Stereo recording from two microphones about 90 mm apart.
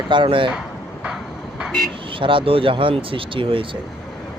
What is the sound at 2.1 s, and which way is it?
Speech, 75° right (ahead or behind).